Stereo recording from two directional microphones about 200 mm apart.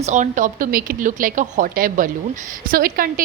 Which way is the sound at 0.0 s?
35° right (ahead or behind).